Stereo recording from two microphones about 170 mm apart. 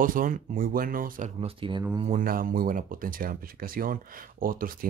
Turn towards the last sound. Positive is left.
turn(degrees=-55)  # may be behind; listen again after turning